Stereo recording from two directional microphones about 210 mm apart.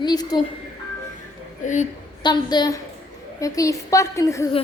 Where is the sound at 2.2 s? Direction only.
20° left (ahead or behind).